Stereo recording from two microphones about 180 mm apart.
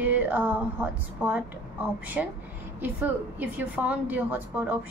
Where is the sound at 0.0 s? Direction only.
10° right (ahead or behind).